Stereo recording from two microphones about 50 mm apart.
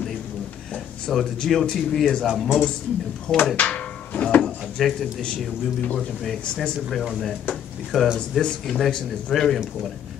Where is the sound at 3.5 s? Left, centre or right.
Left.